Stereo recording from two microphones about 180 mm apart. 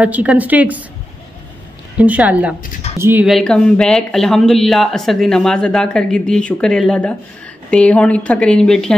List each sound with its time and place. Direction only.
0.0 s a woman's voice: 5° right (ahead or behind)
2.0 s a woman's voice: 10° right (ahead or behind)
3.3 s a man's voice: 5° left (ahead or behind)